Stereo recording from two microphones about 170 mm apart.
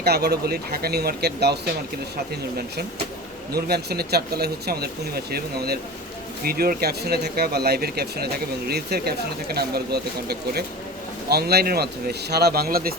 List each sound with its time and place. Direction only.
0.0 s speech: 70° right (ahead or behind)
3.5 s speech: 70° right (ahead or behind)